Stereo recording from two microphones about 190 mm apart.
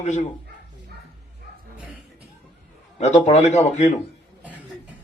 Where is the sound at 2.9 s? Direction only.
35° left (ahead or behind).